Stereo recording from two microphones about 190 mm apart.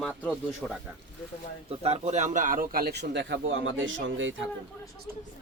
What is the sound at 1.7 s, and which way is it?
A man's voice, 30° right (ahead or behind).